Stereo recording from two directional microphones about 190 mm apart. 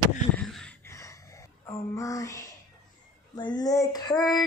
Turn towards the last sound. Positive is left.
turn(degrees=20)  # may be behind; listen again after turning